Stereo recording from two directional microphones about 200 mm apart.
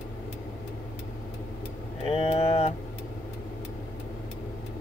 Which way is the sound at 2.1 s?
30° left (ahead or behind).